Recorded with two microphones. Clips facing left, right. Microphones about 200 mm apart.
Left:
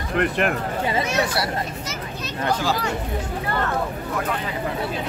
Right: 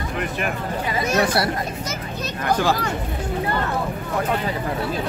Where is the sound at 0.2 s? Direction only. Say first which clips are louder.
Left 6 dB; 60° left (ahead or behind).